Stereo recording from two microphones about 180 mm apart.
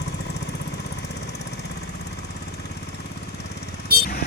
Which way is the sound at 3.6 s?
60° left (ahead or behind).